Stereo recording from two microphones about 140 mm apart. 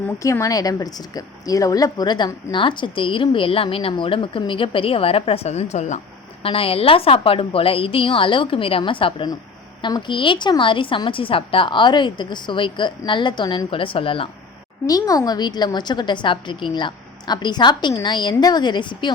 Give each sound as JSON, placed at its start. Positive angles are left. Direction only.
{"t": 0.2, "sound": "speech", "side_deg": 20}
{"t": 6.4, "sound": "speech", "side_deg": 40}
{"t": 14.8, "sound": "speech", "side_deg": 25}